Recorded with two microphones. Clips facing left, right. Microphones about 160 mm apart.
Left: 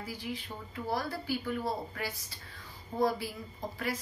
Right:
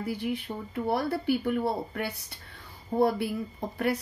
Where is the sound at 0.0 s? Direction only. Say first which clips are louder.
Right 8 dB; 60° right (ahead or behind).